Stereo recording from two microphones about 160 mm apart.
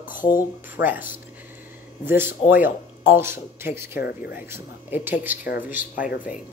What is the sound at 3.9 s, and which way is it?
Speech, 70° left (ahead or behind).